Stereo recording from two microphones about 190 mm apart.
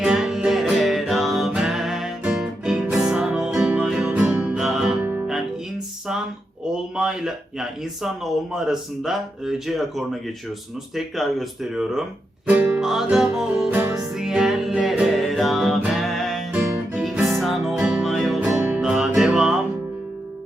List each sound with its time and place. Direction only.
0.0 s music: 5° right (ahead or behind)
6.9 s a man's voice: 5° right (ahead or behind)
14.2 s music: centre (ahead or behind)